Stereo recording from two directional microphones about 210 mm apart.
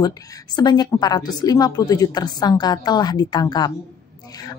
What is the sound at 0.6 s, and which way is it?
A woman's voice, 20° left (ahead or behind).